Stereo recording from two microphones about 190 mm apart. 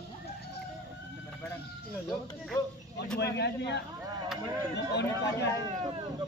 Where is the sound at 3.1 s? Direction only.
60° left (ahead or behind).